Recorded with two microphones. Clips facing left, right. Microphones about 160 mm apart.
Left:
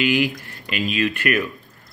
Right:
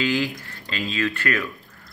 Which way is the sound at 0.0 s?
15° left (ahead or behind).